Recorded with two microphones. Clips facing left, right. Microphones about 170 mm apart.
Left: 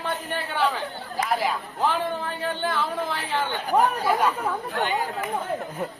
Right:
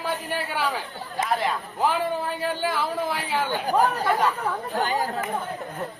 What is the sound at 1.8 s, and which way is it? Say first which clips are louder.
A man's voice: right 1 dB; 10° right (ahead or behind).